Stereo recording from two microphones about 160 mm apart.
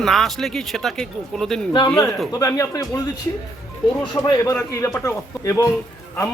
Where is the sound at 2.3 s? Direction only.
20° left (ahead or behind).